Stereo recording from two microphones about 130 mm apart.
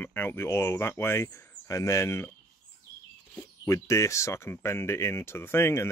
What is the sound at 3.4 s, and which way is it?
Speech, 20° left (ahead or behind).